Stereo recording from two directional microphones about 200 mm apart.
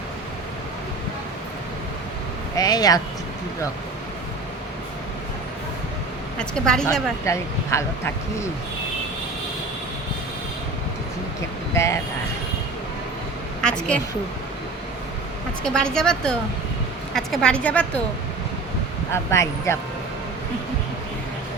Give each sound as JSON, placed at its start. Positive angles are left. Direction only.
{"t": 2.6, "sound": "speech", "side_deg": 20}
{"t": 6.4, "sound": "speech", "side_deg": 5}
{"t": 7.3, "sound": "speech", "side_deg": 15}
{"t": 11.7, "sound": "speech", "side_deg": 15}
{"t": 13.6, "sound": "a woman's voice", "side_deg": 5}
{"t": 15.6, "sound": "speech", "side_deg": 5}
{"t": 19.1, "sound": "speech", "side_deg": 15}